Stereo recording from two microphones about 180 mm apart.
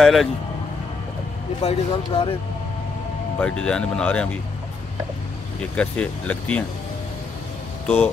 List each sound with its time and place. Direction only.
0.0 s speech: centre (ahead or behind)
1.6 s speech: 35° left (ahead or behind)
3.3 s speech: 5° left (ahead or behind)
5.6 s speech: 5° left (ahead or behind)
7.8 s speech: 10° left (ahead or behind)